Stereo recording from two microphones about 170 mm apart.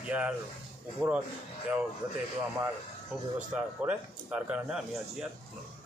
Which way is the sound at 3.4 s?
5° right (ahead or behind).